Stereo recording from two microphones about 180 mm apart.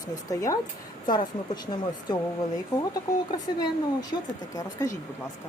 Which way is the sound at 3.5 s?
20° left (ahead or behind).